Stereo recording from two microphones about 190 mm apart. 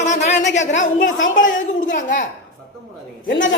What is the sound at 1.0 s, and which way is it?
Speech, 90° left.